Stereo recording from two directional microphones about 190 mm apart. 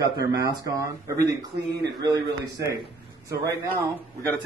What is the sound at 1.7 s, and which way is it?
Speech, 60° right (ahead or behind).